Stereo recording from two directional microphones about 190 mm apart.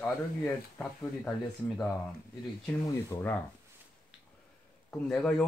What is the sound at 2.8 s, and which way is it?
Speech, 10° left (ahead or behind).